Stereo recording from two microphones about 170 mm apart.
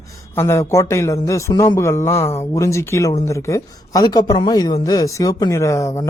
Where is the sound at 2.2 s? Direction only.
35° left (ahead or behind).